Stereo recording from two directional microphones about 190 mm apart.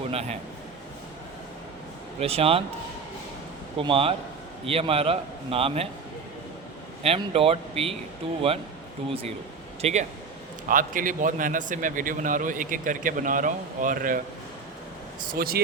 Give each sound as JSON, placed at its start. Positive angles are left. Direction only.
{"t": 0.1, "sound": "a man's voice", "side_deg": -35}
{"t": 2.2, "sound": "speech", "side_deg": -30}
{"t": 3.8, "sound": "a man's voice", "side_deg": -30}
{"t": 7.0, "sound": "speech", "side_deg": -30}
{"t": 9.8, "sound": "a man's voice", "side_deg": -40}
{"t": 15.3, "sound": "a man's voice", "side_deg": -50}